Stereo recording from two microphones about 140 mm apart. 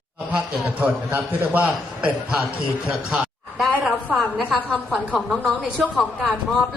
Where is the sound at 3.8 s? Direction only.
Centre (ahead or behind).